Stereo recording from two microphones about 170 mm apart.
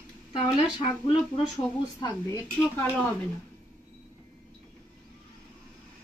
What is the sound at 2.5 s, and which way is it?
Speech, 10° left (ahead or behind).